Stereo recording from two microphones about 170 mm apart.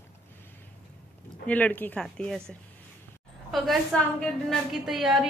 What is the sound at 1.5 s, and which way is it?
Speech, 10° left (ahead or behind).